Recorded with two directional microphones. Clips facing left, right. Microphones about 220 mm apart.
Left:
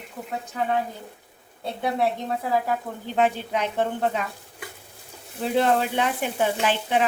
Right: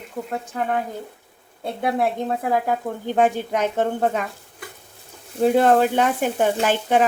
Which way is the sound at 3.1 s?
45° right (ahead or behind).